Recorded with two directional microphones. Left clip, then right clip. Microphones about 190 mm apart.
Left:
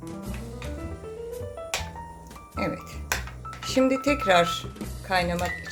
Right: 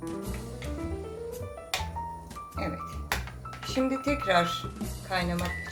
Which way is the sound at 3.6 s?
40° left (ahead or behind).